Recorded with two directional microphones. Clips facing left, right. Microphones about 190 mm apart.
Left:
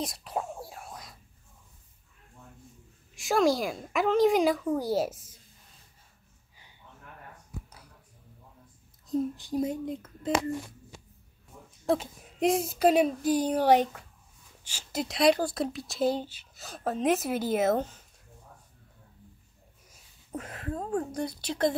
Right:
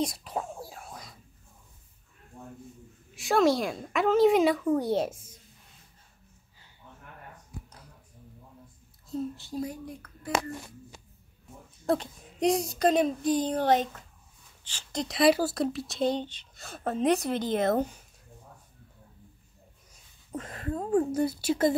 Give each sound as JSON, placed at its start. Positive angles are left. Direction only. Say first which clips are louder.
{"t": 0.0, "sound": "whispering", "louder": "right 2 dB", "side_deg": 0}
{"t": 3.2, "sound": "speech", "louder": "right 1 dB", "side_deg": 0}
{"t": 9.1, "sound": "a child's voice", "louder": "left 4 dB", "side_deg": 15}
{"t": 11.8, "sound": "speech", "louder": "even", "side_deg": 0}
{"t": 17.7, "sound": "speech", "louder": "right 2 dB", "side_deg": -10}
{"t": 20.2, "sound": "speech", "louder": "right 2 dB", "side_deg": 5}